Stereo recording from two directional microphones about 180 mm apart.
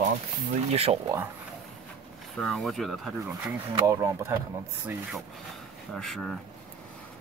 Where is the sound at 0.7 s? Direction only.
35° right (ahead or behind).